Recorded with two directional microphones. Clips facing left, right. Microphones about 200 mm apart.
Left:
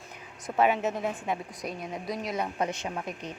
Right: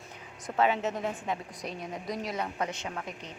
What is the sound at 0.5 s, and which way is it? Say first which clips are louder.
Speech: left 2 dB; 15° left (ahead or behind).